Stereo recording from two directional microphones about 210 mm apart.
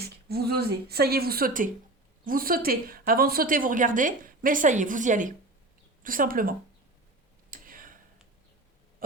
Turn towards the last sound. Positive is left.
turn(degrees=-40)  # may be behind; listen again after turning